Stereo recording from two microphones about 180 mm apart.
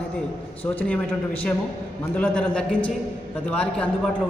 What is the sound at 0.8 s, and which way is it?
A man's voice, 5° left (ahead or behind).